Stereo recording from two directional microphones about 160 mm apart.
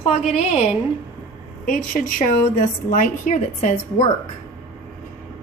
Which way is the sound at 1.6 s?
60° left (ahead or behind).